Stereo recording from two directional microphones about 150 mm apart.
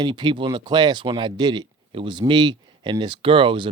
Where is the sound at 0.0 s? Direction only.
30° right (ahead or behind).